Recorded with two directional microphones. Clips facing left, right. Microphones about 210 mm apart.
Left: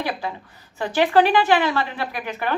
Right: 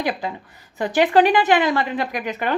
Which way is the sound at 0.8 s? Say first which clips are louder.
Right 2 dB; 15° right (ahead or behind).